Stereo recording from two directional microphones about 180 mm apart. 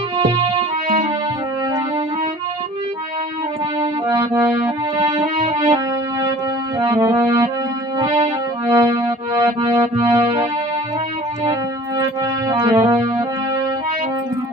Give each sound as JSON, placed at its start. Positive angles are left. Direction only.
{"t": 0.2, "sound": "music", "side_deg": -30}
{"t": 3.8, "sound": "music", "side_deg": -20}
{"t": 8.6, "sound": "music", "side_deg": -20}
{"t": 12.5, "sound": "music", "side_deg": -20}